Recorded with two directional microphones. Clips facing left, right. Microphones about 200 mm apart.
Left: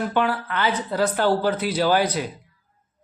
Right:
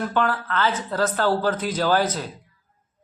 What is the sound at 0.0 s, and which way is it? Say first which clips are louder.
A woman's voice: left 1 dB; 10° left (ahead or behind).